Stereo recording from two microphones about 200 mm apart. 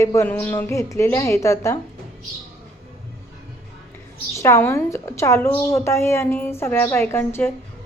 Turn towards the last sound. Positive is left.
turn(degrees=10)  # may be behind; listen again after turning